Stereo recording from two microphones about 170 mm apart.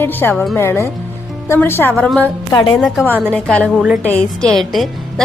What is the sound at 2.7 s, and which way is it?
A woman's voice, 5° left (ahead or behind).